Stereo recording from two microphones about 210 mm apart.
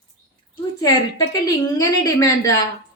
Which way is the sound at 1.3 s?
15° left (ahead or behind).